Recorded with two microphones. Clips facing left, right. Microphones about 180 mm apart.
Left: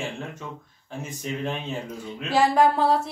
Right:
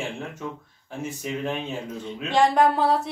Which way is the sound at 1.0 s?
5° right (ahead or behind).